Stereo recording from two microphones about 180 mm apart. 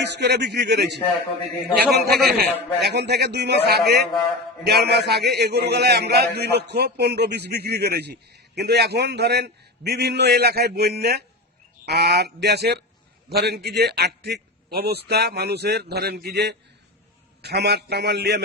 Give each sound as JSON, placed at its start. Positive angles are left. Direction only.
{"t": 0.0, "sound": "a man's voice", "side_deg": -70}
{"t": 2.0, "sound": "a man's voice", "side_deg": 0}
{"t": 2.4, "sound": "a man's voice", "side_deg": -70}